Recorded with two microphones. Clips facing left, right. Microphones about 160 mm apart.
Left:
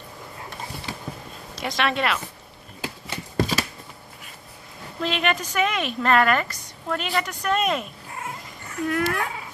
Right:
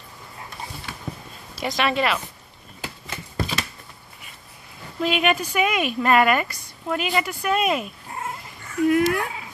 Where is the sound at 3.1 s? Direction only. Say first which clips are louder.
Left 5 dB; 35° left (ahead or behind).